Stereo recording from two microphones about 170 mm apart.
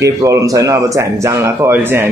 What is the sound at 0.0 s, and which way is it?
Speech, 20° right (ahead or behind).